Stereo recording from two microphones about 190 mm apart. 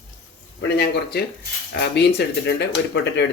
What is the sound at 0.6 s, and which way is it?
Speech, 60° left (ahead or behind).